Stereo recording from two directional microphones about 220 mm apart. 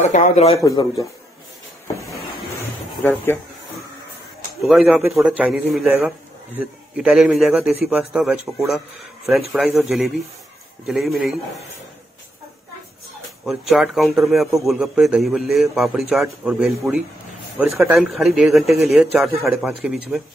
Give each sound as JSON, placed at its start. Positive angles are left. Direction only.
{"t": 0.0, "sound": "speech", "side_deg": 35}
{"t": 1.9, "sound": "a sound", "side_deg": 15}
{"t": 3.0, "sound": "speech", "side_deg": 10}
{"t": 4.6, "sound": "a man's voice", "side_deg": 0}
{"t": 13.5, "sound": "a man's voice", "side_deg": 0}